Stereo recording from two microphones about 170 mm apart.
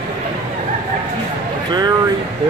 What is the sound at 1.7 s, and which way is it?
Speech, 25° right (ahead or behind).